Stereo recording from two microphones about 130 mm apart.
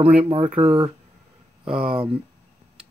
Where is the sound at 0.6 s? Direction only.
45° right (ahead or behind).